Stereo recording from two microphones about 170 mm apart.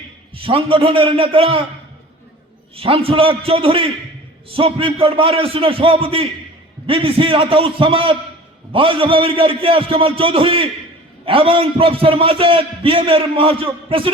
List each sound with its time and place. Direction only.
0.3 s a man's voice: 30° right (ahead or behind)
2.7 s a man's voice: 35° right (ahead or behind)